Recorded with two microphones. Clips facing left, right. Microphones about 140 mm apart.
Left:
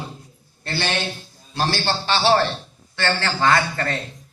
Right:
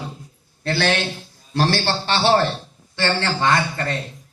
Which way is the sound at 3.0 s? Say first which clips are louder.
Right 1 dB; 25° right (ahead or behind).